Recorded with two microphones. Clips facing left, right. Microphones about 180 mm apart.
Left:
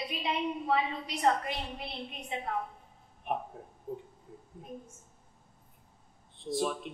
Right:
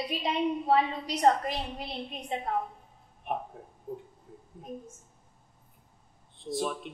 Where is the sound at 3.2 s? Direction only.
Centre (ahead or behind).